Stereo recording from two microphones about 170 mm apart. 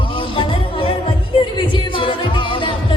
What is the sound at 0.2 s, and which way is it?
Music, 30° left (ahead or behind).